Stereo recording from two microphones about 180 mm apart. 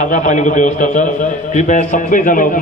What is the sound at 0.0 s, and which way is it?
A man's voice, 45° left (ahead or behind).